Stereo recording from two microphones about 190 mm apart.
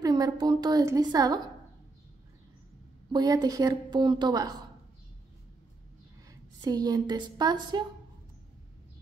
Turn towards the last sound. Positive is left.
turn(degrees=-25)  # may be behind; listen again after turning